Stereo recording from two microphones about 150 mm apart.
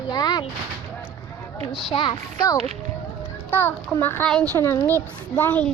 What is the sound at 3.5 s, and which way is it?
A child's voice, 15° left (ahead or behind).